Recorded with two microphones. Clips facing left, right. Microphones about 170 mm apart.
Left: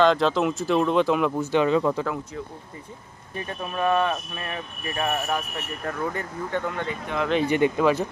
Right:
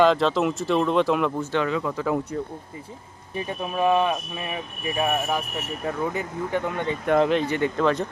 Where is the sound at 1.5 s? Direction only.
15° left (ahead or behind).